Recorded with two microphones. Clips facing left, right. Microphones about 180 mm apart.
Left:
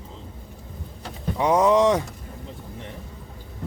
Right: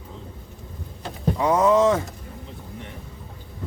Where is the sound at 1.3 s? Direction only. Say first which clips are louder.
Even; 15° left (ahead or behind).